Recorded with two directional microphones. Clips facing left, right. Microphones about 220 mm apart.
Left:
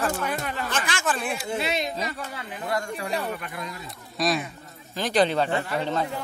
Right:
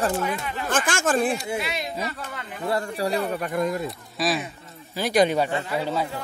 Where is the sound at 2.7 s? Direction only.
35° right (ahead or behind); by 3.9 s 50° right (ahead or behind).